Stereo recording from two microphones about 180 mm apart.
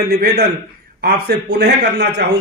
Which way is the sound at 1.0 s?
70° right (ahead or behind).